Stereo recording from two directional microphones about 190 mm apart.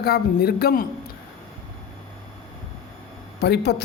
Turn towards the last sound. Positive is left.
turn(degrees=60)  # may be behind; listen again after turning